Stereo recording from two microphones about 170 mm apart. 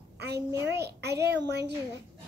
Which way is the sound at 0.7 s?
75° right (ahead or behind).